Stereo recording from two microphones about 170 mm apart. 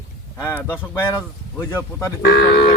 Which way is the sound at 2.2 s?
65° left (ahead or behind).